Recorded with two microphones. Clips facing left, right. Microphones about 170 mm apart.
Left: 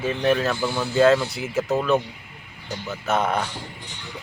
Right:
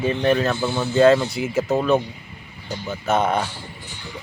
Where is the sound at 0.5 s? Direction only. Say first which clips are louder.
Right 2 dB; 25° right (ahead or behind).